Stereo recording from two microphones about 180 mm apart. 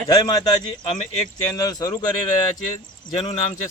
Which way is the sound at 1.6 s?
20° left (ahead or behind).